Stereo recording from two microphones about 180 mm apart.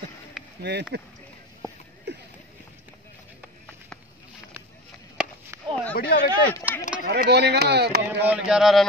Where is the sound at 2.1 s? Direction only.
70° right (ahead or behind).